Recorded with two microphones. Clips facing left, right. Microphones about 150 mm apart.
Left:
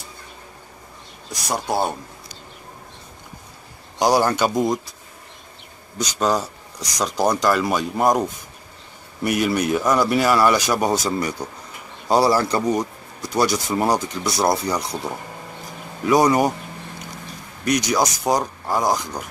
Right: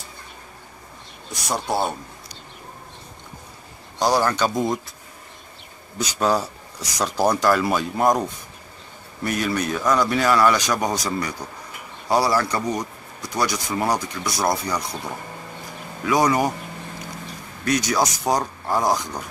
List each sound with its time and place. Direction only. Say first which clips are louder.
1.5 s speech: left 1 dB; 10° left (ahead or behind)
4.0 s speech: left 2 dB; 10° left (ahead or behind)
5.9 s speech: even; 5° right (ahead or behind)
9.2 s speech: left 3 dB; 10° left (ahead or behind)
11.1 s speech: left 3 dB; 25° left (ahead or behind)
13.9 s speech: left 3 dB; centre (ahead or behind)
14.4 s speech: left 3 dB; 25° left (ahead or behind)
16.1 s speech: left 3 dB; 20° left (ahead or behind)
17.6 s speech: left 1 dB; 15° left (ahead or behind)